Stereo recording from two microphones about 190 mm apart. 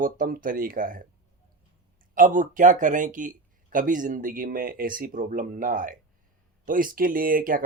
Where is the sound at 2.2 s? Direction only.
45° right (ahead or behind).